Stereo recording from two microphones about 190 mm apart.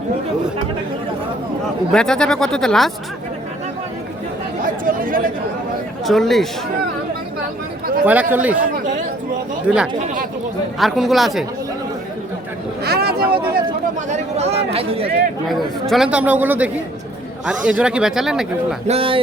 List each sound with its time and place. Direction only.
1.9 s speech: 5° left (ahead or behind)
4.6 s speech: 45° right (ahead or behind)
6.1 s speech: centre (ahead or behind)
8.0 s speech: 10° right (ahead or behind)
8.5 s speech: 40° right (ahead or behind)
9.6 s speech: 5° right (ahead or behind)
12.8 s vehicle: 55° right (ahead or behind)
14.1 s speech: 35° right (ahead or behind)
15.4 s speech: centre (ahead or behind)
18.9 s speech: 30° right (ahead or behind)